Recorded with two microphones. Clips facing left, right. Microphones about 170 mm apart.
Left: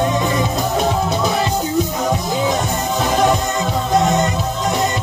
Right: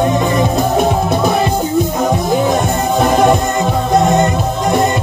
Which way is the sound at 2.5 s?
55° right (ahead or behind).